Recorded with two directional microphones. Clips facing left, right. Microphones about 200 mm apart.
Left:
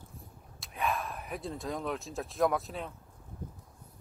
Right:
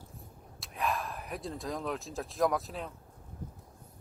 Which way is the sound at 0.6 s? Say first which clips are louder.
Even; centre (ahead or behind).